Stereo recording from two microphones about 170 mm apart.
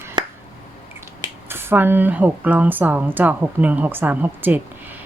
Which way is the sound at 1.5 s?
15° right (ahead or behind).